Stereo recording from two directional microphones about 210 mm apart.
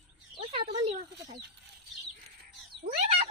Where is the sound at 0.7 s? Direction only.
30° right (ahead or behind).